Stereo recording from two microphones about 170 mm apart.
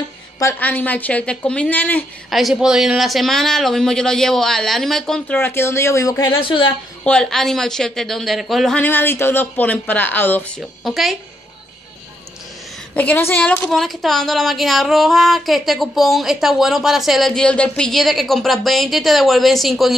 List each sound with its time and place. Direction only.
0.4 s a woman's voice: 15° left (ahead or behind)
2.2 s a woman's voice: centre (ahead or behind); by 6.3 s 20° left (ahead or behind)
6.4 s a woman's voice: 30° left (ahead or behind)
7.1 s a woman's voice: 5° left (ahead or behind)
10.6 s a woman's voice: centre (ahead or behind)
12.9 s a woman's voice: 10° left (ahead or behind)